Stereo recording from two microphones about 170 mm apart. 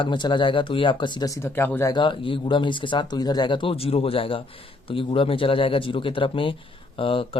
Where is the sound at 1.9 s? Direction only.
30° left (ahead or behind).